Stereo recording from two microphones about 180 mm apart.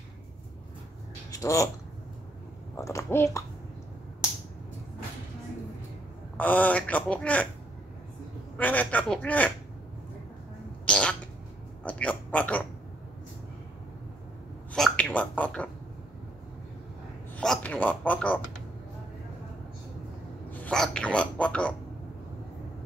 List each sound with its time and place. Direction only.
1.3 s speech: 20° left (ahead or behind)
2.7 s speech: 15° left (ahead or behind)
6.3 s a man's voice: 10° left (ahead or behind)
8.5 s a man's voice: 10° left (ahead or behind)
10.9 s cat: 5° left (ahead or behind)
11.8 s speech: 5° left (ahead or behind)
14.7 s a man's voice: 5° left (ahead or behind)
17.3 s a man's voice: 5° left (ahead or behind)
20.5 s speech: 5° left (ahead or behind)